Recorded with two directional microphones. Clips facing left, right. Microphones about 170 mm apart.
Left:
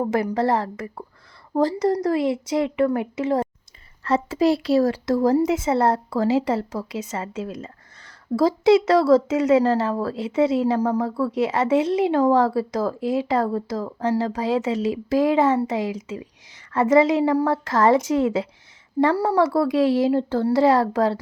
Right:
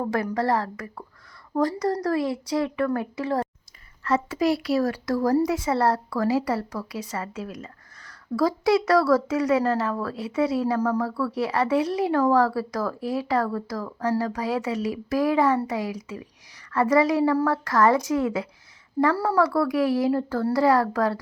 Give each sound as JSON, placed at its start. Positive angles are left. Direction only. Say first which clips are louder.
{"t": 0.0, "sound": "speech", "louder": "left 4 dB", "side_deg": 25}